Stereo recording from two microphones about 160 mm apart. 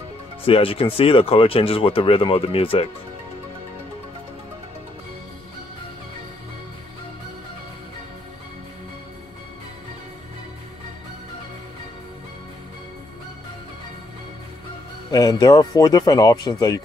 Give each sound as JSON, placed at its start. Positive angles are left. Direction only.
{"t": 0.5, "sound": "speech", "side_deg": 35}
{"t": 15.0, "sound": "speech", "side_deg": 25}